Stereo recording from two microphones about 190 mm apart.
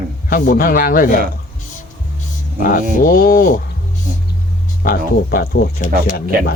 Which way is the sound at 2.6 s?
45° left (ahead or behind).